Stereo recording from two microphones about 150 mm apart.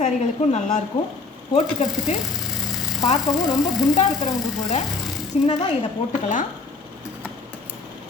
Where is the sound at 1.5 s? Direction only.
50° left (ahead or behind).